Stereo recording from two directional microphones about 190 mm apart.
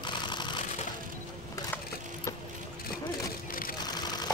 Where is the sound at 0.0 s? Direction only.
25° left (ahead or behind).